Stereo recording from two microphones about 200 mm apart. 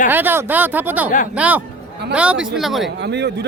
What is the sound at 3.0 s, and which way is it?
Speech, 60° right (ahead or behind).